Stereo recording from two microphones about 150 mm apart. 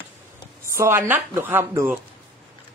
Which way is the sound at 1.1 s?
15° right (ahead or behind).